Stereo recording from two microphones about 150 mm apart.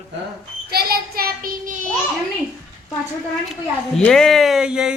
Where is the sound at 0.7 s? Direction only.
90° right; by 1.8 s 70° right (ahead or behind).